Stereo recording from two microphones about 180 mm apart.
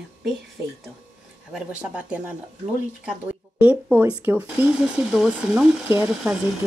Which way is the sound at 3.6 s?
5° right (ahead or behind).